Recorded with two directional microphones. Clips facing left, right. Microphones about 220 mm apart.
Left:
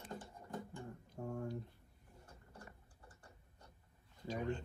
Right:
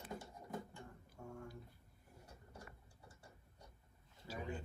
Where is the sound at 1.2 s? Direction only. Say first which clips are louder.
Left 8 dB; 35° left (ahead or behind).